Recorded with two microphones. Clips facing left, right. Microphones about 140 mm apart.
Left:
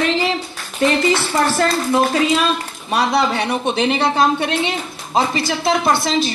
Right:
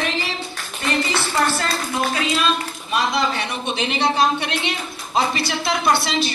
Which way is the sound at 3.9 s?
45° left (ahead or behind).